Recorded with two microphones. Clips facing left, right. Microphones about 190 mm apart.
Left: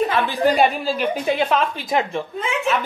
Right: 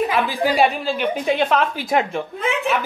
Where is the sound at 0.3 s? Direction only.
Centre (ahead or behind).